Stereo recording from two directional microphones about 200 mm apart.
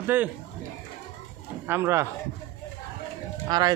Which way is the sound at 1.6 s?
10° right (ahead or behind).